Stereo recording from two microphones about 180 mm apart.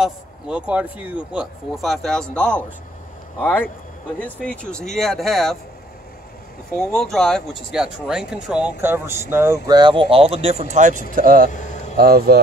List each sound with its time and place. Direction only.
0.0 s speech: 5° right (ahead or behind)
6.8 s speech: 5° left (ahead or behind); by 9.6 s 15° right (ahead or behind)
9.7 s speech: 25° right (ahead or behind); by 12.4 s 60° right (ahead or behind)